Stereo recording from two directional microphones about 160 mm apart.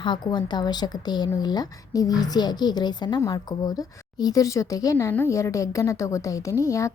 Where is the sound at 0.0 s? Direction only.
30° left (ahead or behind).